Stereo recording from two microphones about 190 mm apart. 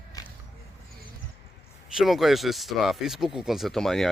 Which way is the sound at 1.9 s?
Centre (ahead or behind).